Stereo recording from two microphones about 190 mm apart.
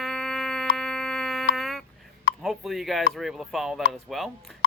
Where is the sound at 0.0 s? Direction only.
Centre (ahead or behind).